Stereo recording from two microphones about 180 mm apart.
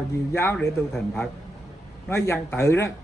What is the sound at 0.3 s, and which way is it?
A man's voice, 15° left (ahead or behind).